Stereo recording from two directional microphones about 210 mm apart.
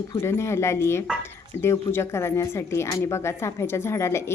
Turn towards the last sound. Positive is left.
turn(degrees=10)  # may be behind; listen again after turning